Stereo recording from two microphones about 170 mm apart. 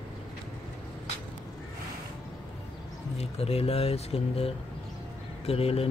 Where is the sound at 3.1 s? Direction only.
35° left (ahead or behind).